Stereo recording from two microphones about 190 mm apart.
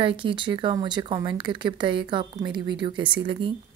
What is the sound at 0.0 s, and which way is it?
Speech, 25° right (ahead or behind).